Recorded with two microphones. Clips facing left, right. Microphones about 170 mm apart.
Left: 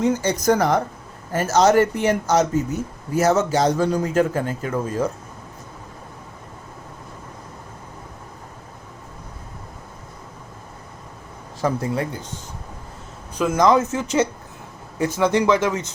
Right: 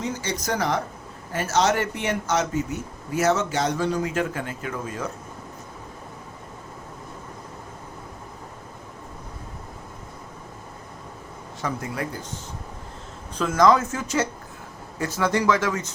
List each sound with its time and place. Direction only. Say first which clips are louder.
0.0 s a man's voice: left 9 dB; 50° left (ahead or behind)
11.6 s a man's voice: left 7 dB; 30° left (ahead or behind)
13.4 s speech: left 2 dB; 20° left (ahead or behind)